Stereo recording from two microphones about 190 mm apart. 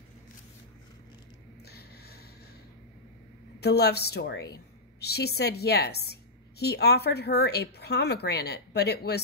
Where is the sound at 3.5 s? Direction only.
60° left (ahead or behind).